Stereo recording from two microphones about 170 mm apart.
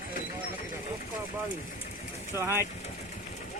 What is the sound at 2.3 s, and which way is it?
Speech, 15° right (ahead or behind).